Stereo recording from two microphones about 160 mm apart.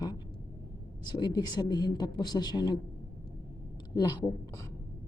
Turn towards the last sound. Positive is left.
turn(degrees=25)  # may be behind; listen again after turning